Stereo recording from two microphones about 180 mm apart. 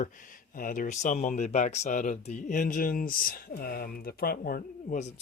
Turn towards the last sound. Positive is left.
turn(degrees=55)  # may be behind; listen again after turning